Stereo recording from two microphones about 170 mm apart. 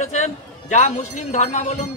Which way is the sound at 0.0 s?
45° left (ahead or behind).